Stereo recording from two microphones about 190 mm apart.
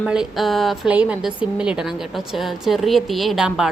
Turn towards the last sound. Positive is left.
turn(degrees=-5)  # may be behind; listen again after turning